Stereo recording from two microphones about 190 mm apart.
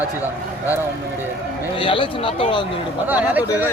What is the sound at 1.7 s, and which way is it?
Speech, 25° left (ahead or behind).